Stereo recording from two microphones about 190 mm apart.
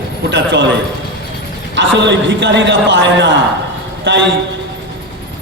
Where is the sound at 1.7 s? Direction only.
75° right (ahead or behind).